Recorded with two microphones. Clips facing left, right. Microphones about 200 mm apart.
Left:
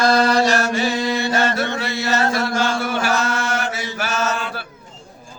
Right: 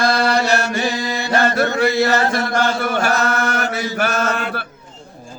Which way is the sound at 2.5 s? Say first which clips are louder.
Right 2 dB; 55° right (ahead or behind).